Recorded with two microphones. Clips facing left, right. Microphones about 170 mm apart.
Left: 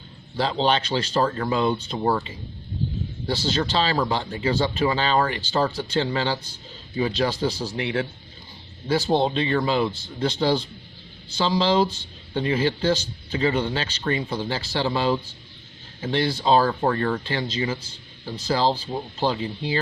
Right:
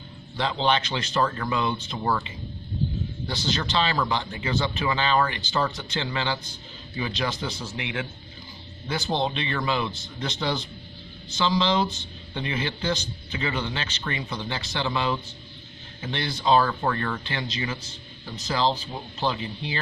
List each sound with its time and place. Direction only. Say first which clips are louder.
0.3 s speech: left 2 dB; 35° left (ahead or behind)